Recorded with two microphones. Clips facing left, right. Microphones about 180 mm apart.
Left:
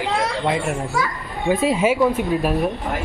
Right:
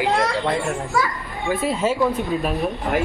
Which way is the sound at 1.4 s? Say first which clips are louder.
Left 3 dB; 15° left (ahead or behind).